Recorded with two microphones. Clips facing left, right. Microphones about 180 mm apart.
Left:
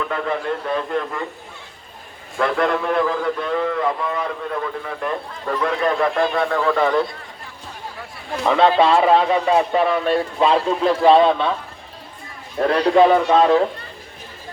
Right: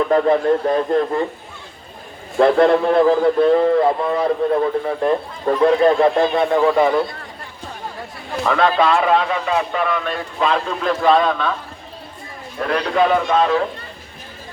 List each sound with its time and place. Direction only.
0.1 s speech: 35° right (ahead or behind)
2.4 s speech: 30° right (ahead or behind); by 7.0 s 15° right (ahead or behind)
8.4 s speech: 25° left (ahead or behind)
12.5 s speech: 30° left (ahead or behind)